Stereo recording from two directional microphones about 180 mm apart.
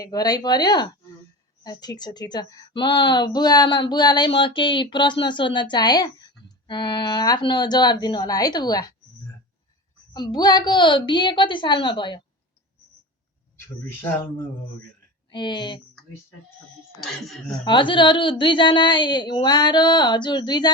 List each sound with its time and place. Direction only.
0.0 s speech: 20° left (ahead or behind)
10.1 s speech: 25° left (ahead or behind)
13.8 s speech: 15° left (ahead or behind)
15.3 s speech: 25° left (ahead or behind)
17.0 s speech: centre (ahead or behind)
17.7 s speech: 25° left (ahead or behind)